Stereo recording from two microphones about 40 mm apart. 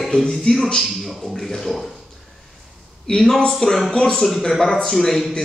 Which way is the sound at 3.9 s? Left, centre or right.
Centre.